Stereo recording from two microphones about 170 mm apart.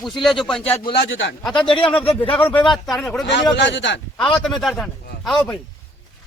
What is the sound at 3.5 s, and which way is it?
Speech, 90° left.